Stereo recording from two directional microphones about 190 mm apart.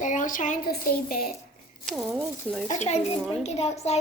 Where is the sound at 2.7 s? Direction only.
35° left (ahead or behind).